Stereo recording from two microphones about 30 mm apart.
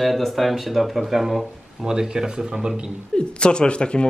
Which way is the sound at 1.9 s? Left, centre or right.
Right.